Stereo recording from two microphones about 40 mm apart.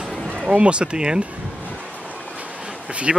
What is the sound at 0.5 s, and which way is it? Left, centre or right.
Speech, right.